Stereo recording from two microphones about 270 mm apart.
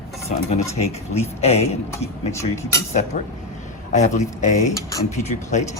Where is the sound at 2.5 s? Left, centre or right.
Centre.